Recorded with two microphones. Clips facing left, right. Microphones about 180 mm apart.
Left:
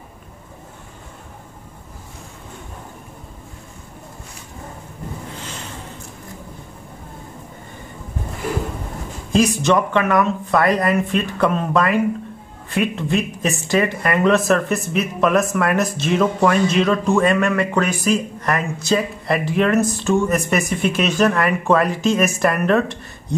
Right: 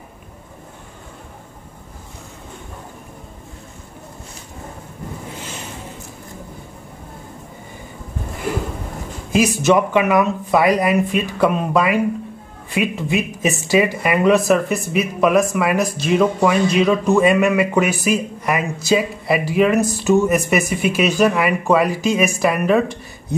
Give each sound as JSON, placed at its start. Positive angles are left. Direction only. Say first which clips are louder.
{"t": 9.3, "sound": "speech", "louder": "right 1 dB", "side_deg": -5}